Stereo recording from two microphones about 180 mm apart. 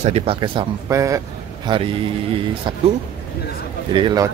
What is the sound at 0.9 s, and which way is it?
Speech, 15° right (ahead or behind).